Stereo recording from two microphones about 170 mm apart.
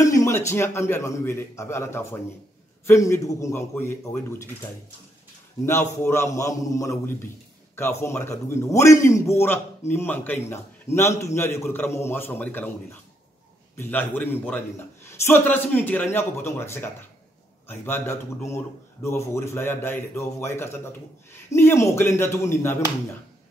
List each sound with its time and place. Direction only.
0.0 s a man's voice: 20° left (ahead or behind)
5.7 s a man's voice: 15° left (ahead or behind)
13.7 s a man's voice: 10° left (ahead or behind)